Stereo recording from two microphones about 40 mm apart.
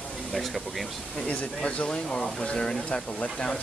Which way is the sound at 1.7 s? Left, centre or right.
Left.